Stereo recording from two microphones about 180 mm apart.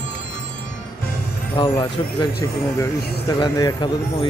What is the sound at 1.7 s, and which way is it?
Speech, 20° left (ahead or behind).